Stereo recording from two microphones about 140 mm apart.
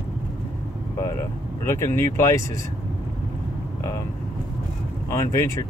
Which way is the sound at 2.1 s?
20° left (ahead or behind).